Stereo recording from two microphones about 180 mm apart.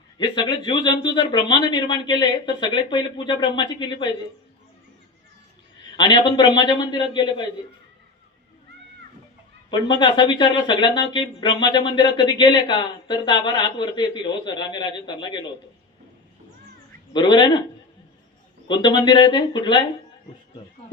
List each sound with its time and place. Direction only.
0.2 s speech: 25° left (ahead or behind)
6.0 s speech: 25° left (ahead or behind)
9.6 s speech: 25° left (ahead or behind)
17.2 s speech: 25° left (ahead or behind)
18.8 s speech: 25° left (ahead or behind)